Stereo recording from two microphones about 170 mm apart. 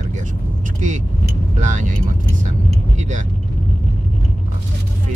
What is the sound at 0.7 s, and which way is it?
Speech, 50° right (ahead or behind).